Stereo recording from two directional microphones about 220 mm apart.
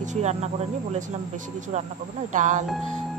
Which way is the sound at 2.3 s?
35° right (ahead or behind).